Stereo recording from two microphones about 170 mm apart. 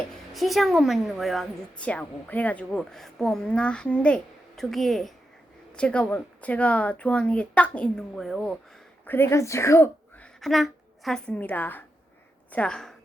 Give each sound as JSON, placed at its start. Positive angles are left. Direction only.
{"t": 0.3, "sound": "a woman's voice", "side_deg": 0}
{"t": 9.0, "sound": "a woman's voice", "side_deg": 15}
{"t": 10.4, "sound": "a woman's voice", "side_deg": 0}